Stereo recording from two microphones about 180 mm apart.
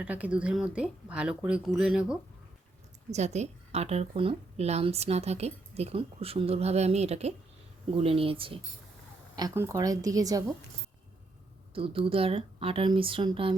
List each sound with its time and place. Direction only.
0.0 s speech: 10° right (ahead or behind)
3.1 s a woman's voice: 40° right (ahead or behind)
9.3 s speech: 20° right (ahead or behind)
11.7 s speech: 30° right (ahead or behind)